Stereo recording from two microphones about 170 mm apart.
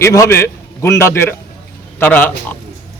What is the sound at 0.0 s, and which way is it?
A man's voice, 15° left (ahead or behind).